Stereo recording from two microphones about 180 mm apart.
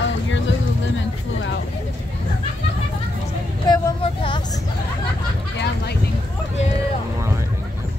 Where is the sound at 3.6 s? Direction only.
25° left (ahead or behind).